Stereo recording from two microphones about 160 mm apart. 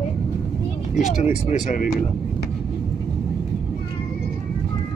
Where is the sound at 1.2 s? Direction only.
55° left (ahead or behind).